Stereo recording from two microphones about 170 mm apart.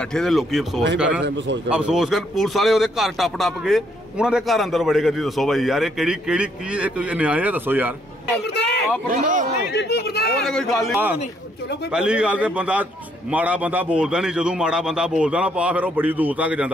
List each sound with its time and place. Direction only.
0.1 s a man's voice: centre (ahead or behind)
8.5 s a sound: 85° left
9.1 s a man's voice: 50° right (ahead or behind)
9.7 s speech: 75° left (ahead or behind)
10.4 s a man's voice: 5° left (ahead or behind)